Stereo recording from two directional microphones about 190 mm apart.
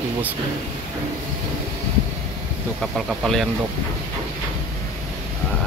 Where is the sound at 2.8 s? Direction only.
Centre (ahead or behind).